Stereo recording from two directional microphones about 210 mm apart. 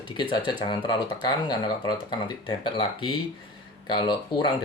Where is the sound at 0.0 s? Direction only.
20° left (ahead or behind).